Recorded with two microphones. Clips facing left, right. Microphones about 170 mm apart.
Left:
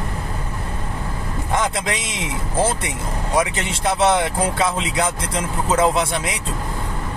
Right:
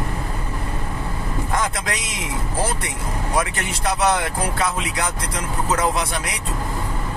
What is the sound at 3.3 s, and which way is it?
Speech, 25° left (ahead or behind).